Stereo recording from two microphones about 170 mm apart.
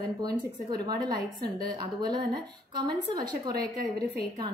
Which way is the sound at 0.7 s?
25° right (ahead or behind).